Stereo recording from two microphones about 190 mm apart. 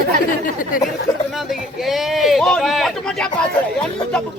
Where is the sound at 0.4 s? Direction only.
45° left (ahead or behind).